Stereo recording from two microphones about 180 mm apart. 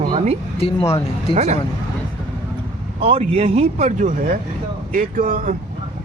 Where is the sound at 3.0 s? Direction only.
35° right (ahead or behind).